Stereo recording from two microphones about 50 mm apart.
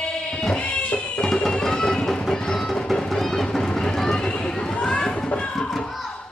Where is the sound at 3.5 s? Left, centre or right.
Centre.